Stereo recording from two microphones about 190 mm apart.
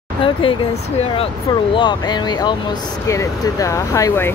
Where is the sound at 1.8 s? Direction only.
25° left (ahead or behind).